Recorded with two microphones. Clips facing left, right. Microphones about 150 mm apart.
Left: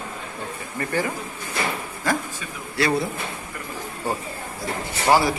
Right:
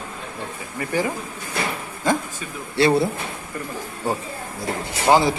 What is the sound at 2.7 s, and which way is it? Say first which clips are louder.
Speech: right 5 dB; 25° right (ahead or behind).